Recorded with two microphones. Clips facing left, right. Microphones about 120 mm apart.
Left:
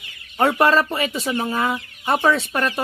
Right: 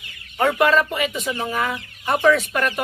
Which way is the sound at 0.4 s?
35° left (ahead or behind).